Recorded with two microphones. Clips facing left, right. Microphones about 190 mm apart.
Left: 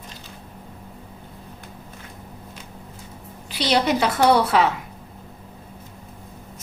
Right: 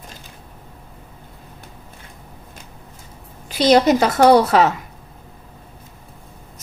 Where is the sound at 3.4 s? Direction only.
45° right (ahead or behind).